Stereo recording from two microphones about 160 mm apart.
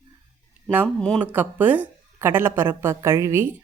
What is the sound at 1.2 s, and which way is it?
Speech, 10° right (ahead or behind).